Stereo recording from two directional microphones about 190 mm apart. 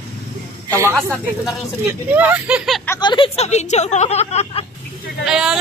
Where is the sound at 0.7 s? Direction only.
15° right (ahead or behind).